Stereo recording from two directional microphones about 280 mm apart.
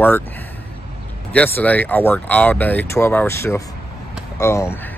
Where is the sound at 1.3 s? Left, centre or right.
Centre.